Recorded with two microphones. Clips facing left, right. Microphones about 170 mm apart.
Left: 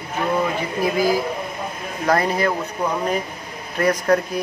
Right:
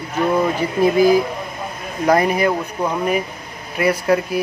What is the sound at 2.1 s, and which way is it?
Speech, 15° right (ahead or behind).